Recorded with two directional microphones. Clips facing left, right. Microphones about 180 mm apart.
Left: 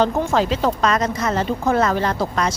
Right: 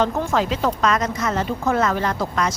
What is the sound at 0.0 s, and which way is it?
Speech, 30° left (ahead or behind).